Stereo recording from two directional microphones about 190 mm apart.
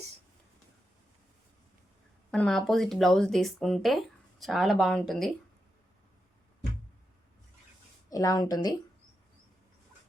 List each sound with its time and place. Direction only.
2.3 s speech: 5° left (ahead or behind)
8.1 s speech: 20° left (ahead or behind)